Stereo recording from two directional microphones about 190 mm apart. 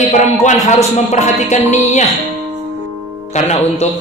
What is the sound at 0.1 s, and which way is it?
Music, 40° left (ahead or behind).